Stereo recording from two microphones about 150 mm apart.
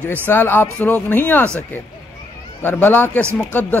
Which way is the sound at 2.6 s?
15° left (ahead or behind).